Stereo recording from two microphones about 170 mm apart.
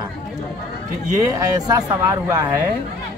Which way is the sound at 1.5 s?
20° right (ahead or behind).